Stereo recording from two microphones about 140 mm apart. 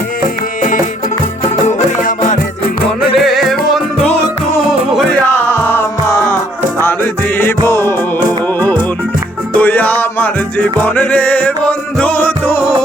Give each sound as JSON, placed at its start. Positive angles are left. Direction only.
{"t": 1.6, "sound": "music", "side_deg": 55}
{"t": 3.2, "sound": "music", "side_deg": 0}
{"t": 5.5, "sound": "music", "side_deg": 15}
{"t": 7.7, "sound": "music", "side_deg": 20}
{"t": 9.6, "sound": "music", "side_deg": 10}